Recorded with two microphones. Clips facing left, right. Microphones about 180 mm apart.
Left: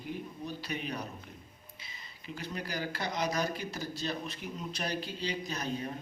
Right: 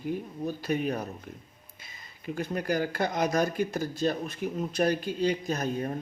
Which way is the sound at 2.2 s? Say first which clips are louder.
Right 10 dB; 50° right (ahead or behind).